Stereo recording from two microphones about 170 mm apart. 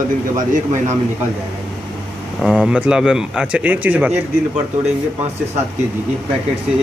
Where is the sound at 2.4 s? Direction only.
5° right (ahead or behind).